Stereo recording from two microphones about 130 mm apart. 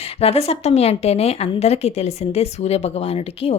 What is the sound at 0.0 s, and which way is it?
A woman's voice, 50° left (ahead or behind).